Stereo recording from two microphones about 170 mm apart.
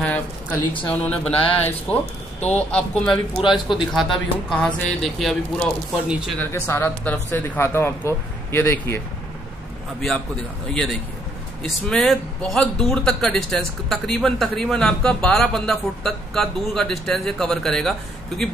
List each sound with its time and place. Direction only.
0.0 s a man's voice: 10° left (ahead or behind)
6.5 s speech: 15° left (ahead or behind)
10.7 s a man's voice: 5° left (ahead or behind)